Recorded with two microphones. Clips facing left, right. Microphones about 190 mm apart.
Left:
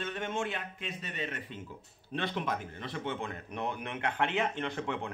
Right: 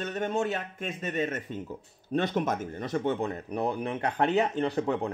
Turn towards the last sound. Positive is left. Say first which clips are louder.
# right 8 dB
turn(degrees=-40)  # may be behind; listen again after turning